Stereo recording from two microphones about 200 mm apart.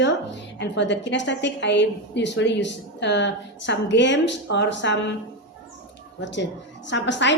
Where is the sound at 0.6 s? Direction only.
60° left (ahead or behind).